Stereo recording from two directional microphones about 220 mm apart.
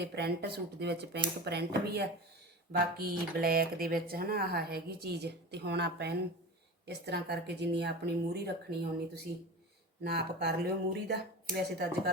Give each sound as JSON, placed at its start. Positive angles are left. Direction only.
{"t": 0.0, "sound": "speech", "side_deg": -50}